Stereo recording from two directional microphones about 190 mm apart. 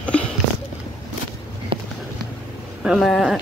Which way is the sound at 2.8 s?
Centre (ahead or behind).